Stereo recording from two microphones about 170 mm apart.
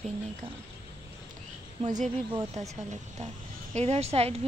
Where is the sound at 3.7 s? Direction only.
40° right (ahead or behind).